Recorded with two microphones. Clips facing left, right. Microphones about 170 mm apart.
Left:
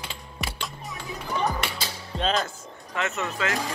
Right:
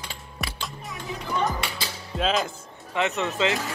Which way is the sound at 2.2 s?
Centre (ahead or behind).